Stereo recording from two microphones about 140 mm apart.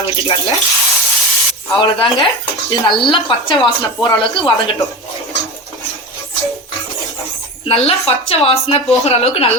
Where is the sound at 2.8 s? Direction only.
35° left (ahead or behind).